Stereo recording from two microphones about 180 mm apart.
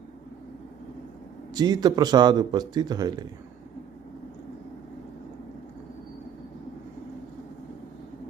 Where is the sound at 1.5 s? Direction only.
20° right (ahead or behind).